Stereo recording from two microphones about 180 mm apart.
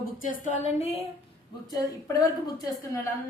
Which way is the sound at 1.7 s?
20° left (ahead or behind).